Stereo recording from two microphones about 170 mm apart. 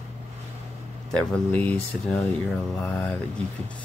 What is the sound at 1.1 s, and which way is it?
Speech, 5° left (ahead or behind).